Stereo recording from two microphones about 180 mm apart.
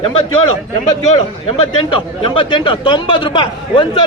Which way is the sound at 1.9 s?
25° left (ahead or behind).